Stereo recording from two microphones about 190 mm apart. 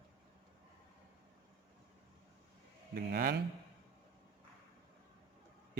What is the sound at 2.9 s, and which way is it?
Speech, 50° right (ahead or behind).